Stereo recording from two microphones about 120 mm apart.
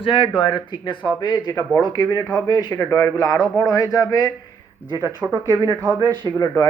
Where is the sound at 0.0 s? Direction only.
50° left (ahead or behind); by 4.3 s 30° left (ahead or behind).